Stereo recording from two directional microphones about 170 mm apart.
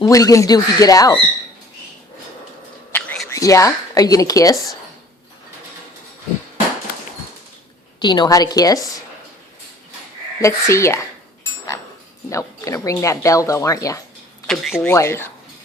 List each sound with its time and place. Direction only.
0.0 s speech: 20° left (ahead or behind)
2.9 s a sound: 10° left (ahead or behind)
7.9 s speech: 25° left (ahead or behind)
10.4 s speech: 15° left (ahead or behind)
12.3 s speech: 15° left (ahead or behind)
14.4 s speech: centre (ahead or behind)
14.9 s speech: 15° left (ahead or behind)